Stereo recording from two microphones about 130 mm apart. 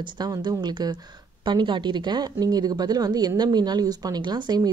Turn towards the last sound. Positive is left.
turn(degrees=-30)  # may be behind; listen again after turning